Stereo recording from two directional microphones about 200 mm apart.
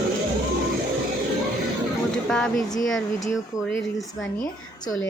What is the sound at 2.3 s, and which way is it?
A woman's voice, centre (ahead or behind).